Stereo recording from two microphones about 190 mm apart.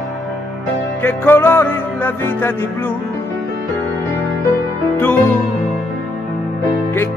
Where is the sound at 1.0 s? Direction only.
10° left (ahead or behind).